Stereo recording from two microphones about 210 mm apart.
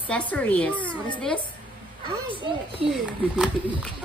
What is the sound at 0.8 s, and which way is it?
Speech, 25° left (ahead or behind).